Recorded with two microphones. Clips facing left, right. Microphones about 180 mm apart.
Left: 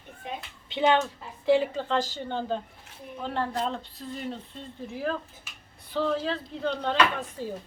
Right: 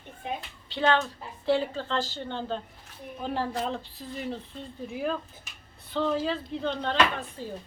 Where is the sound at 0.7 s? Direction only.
20° left (ahead or behind).